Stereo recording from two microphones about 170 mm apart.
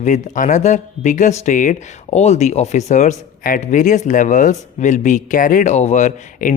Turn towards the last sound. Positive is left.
turn(degrees=45)  # may be behind; listen again after turning